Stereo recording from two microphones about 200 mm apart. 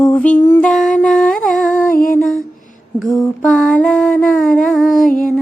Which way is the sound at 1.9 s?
45° left (ahead or behind).